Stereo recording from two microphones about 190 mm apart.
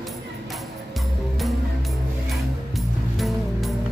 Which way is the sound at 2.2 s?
Centre (ahead or behind).